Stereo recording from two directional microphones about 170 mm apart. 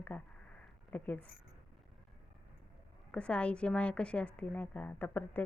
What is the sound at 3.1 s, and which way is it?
A woman's voice, 5° left (ahead or behind).